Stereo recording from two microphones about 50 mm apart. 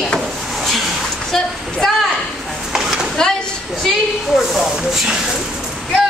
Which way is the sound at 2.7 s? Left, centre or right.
Centre.